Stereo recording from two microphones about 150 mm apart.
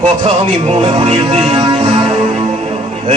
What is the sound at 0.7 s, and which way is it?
Speech, 30° right (ahead or behind).